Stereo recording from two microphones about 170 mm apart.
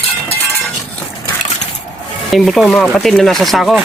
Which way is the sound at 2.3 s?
Centre (ahead or behind).